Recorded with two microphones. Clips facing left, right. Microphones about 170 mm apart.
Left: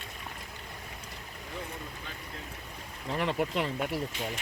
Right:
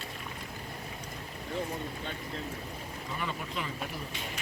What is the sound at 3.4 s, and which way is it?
Speech, 75° left (ahead or behind).